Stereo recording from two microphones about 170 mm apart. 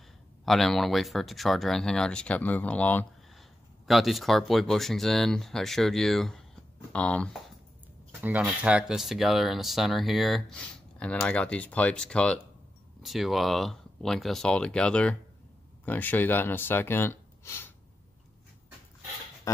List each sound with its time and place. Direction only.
0.5 s speech: centre (ahead or behind)
8.2 s speech: 10° right (ahead or behind); by 17.6 s 15° left (ahead or behind)
19.5 s pig: 20° left (ahead or behind)